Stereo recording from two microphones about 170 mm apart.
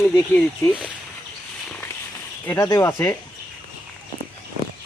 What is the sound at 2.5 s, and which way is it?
Speech, 20° left (ahead or behind).